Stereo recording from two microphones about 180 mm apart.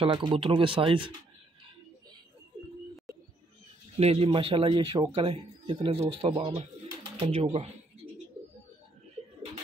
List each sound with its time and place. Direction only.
0.0 s speech: 25° right (ahead or behind)
3.1 s bird: centre (ahead or behind)
4.0 s speech: 35° right (ahead or behind)